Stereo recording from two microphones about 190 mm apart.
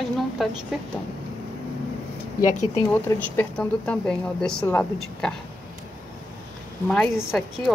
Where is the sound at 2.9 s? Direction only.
10° left (ahead or behind).